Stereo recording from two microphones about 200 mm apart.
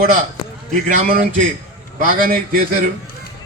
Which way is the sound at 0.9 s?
45° right (ahead or behind).